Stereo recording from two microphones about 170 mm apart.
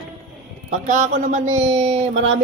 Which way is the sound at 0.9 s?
45° right (ahead or behind).